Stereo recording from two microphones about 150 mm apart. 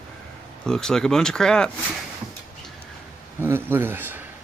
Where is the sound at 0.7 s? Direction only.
5° left (ahead or behind).